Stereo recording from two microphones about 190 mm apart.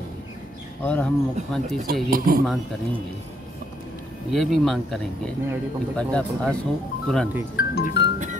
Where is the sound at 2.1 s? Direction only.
50° right (ahead or behind).